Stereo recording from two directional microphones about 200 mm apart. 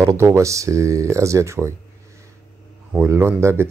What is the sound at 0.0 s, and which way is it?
Speech, 15° right (ahead or behind).